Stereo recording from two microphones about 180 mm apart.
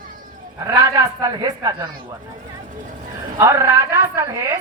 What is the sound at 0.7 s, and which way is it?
A man's voice, 20° right (ahead or behind).